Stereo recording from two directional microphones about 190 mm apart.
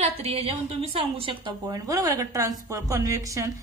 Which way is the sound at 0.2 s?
30° right (ahead or behind).